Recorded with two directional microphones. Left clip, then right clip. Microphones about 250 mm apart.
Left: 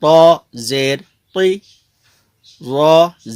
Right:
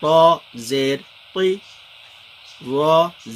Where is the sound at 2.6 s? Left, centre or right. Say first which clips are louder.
Left 6 dB; left.